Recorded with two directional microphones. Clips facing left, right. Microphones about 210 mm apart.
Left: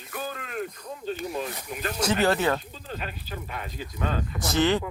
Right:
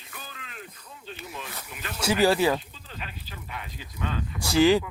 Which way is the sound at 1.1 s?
40° left (ahead or behind).